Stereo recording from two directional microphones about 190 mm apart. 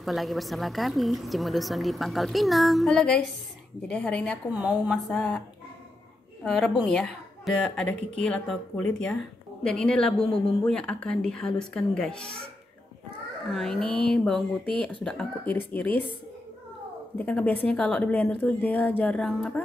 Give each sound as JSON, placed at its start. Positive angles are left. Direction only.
{"t": 0.0, "sound": "a woman's voice", "side_deg": 0}
{"t": 4.5, "sound": "a woman's voice", "side_deg": -5}
{"t": 6.4, "sound": "a woman's voice", "side_deg": 5}
{"t": 13.5, "sound": "a woman's voice", "side_deg": 0}
{"t": 13.8, "sound": "a sound", "side_deg": -30}
{"t": 14.1, "sound": "a woman's voice", "side_deg": 0}
{"t": 17.2, "sound": "a woman's voice", "side_deg": 5}